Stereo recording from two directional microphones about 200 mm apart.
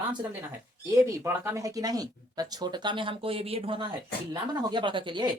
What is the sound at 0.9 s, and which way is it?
Speech, 15° right (ahead or behind).